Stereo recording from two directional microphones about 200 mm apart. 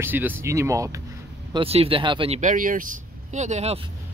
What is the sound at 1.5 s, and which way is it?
Speech, 30° right (ahead or behind).